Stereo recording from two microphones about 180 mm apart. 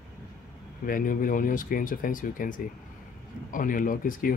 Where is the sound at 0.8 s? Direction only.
50° left (ahead or behind).